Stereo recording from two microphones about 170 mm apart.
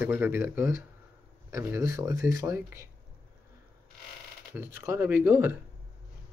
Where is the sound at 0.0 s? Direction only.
10° right (ahead or behind).